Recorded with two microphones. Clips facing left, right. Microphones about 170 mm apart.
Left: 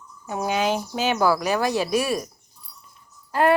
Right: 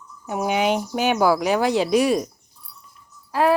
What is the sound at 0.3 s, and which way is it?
Speech, 15° right (ahead or behind).